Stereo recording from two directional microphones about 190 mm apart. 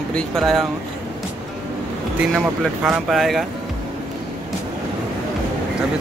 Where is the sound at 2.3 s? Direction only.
Centre (ahead or behind).